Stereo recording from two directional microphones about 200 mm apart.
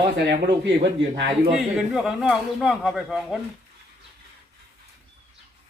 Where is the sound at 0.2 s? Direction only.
60° right (ahead or behind).